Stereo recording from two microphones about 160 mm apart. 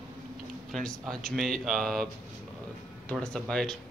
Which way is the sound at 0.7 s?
5° left (ahead or behind).